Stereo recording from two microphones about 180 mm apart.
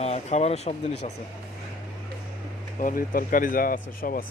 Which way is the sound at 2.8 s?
50° left (ahead or behind).